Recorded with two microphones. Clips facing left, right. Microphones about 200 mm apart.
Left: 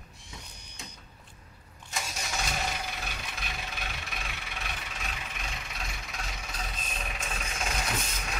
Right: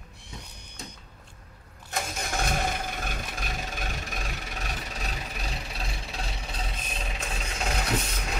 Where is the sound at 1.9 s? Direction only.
55° right (ahead or behind); by 7.2 s 30° right (ahead or behind).